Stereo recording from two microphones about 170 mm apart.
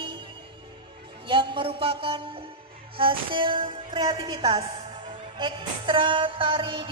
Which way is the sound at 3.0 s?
30° right (ahead or behind).